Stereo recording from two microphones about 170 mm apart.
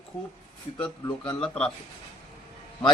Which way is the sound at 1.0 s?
15° left (ahead or behind).